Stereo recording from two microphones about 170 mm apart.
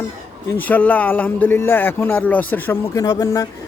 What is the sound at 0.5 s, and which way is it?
Speech, 10° left (ahead or behind).